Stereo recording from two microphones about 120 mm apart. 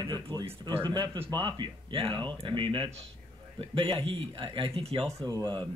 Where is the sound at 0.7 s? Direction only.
40° right (ahead or behind).